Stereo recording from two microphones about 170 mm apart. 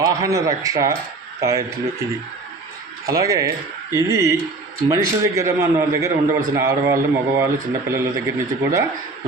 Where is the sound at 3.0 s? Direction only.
20° right (ahead or behind).